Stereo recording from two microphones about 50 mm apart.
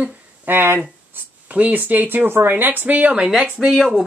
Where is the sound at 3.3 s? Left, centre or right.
Centre.